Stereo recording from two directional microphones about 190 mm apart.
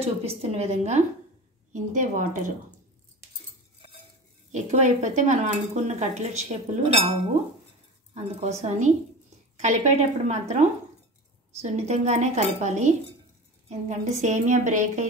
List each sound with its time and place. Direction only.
0.0 s speech: 30° right (ahead or behind)
4.5 s speech: 35° right (ahead or behind)
11.9 s speech: 35° right (ahead or behind)